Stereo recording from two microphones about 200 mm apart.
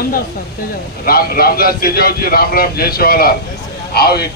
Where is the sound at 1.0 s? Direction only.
50° left (ahead or behind).